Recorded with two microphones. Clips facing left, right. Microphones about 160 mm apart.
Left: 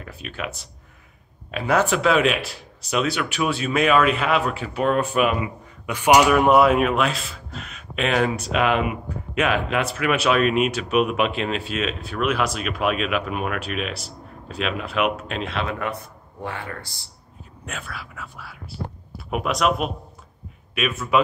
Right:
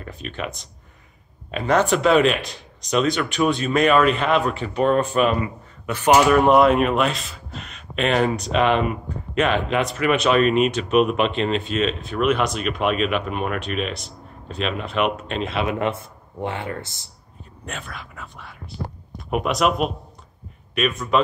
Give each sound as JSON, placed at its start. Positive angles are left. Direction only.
{"t": 0.0, "sound": "speech", "side_deg": 5}
{"t": 15.6, "sound": "speech", "side_deg": -20}
{"t": 17.6, "sound": "speech", "side_deg": 5}